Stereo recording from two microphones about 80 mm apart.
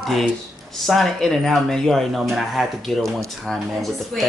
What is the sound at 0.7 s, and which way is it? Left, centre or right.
Speech, centre.